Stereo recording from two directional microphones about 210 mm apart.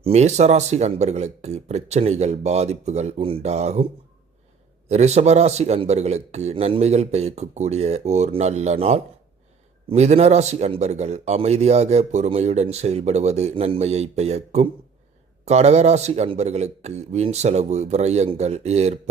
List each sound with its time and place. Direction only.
0.0 s speech: 30° right (ahead or behind)
4.9 s speech: 30° right (ahead or behind)